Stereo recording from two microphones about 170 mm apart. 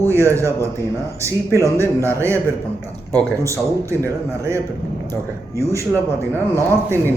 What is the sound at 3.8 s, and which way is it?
Speech, 15° right (ahead or behind).